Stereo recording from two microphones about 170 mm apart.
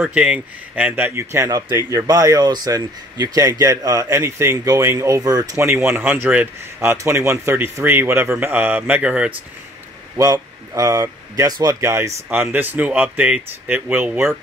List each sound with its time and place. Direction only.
0.0 s speech: 5° right (ahead or behind)
10.1 s speech: 20° right (ahead or behind)